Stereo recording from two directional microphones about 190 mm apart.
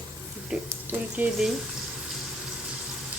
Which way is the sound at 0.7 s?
10° right (ahead or behind).